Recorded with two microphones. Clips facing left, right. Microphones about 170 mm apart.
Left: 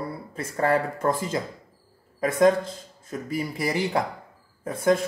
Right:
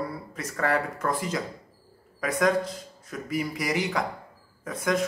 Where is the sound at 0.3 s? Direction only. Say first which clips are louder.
Left 5 dB; 30° left (ahead or behind).